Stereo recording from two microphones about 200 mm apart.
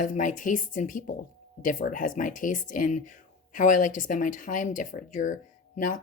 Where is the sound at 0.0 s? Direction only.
40° left (ahead or behind).